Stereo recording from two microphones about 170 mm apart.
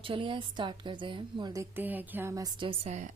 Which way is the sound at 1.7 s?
10° right (ahead or behind).